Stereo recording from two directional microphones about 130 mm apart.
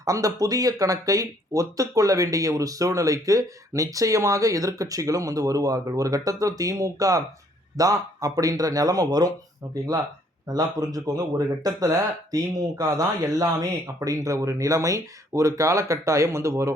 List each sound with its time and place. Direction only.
0.0 s speech: 25° right (ahead or behind)